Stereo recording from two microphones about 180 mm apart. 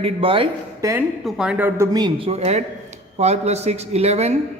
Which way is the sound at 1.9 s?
25° right (ahead or behind).